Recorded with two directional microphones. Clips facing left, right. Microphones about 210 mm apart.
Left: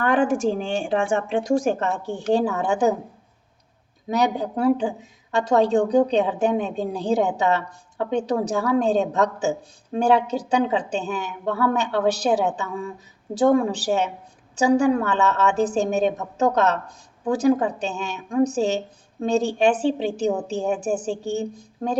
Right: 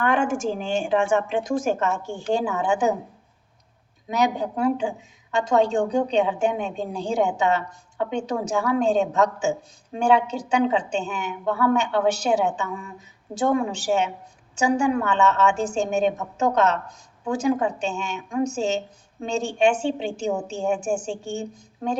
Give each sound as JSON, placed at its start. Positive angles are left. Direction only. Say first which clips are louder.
{"t": 0.0, "sound": "a woman's voice", "louder": "left 3 dB", "side_deg": 35}
{"t": 4.2, "sound": "a woman's voice", "louder": "even", "side_deg": 35}